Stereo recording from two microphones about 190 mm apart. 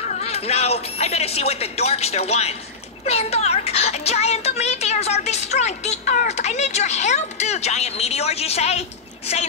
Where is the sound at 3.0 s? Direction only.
35° left (ahead or behind).